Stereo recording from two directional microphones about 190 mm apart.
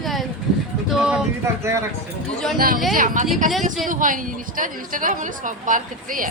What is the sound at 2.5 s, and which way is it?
A woman's voice, 50° right (ahead or behind).